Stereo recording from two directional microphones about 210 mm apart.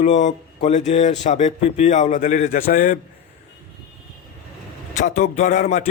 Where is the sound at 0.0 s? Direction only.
35° left (ahead or behind).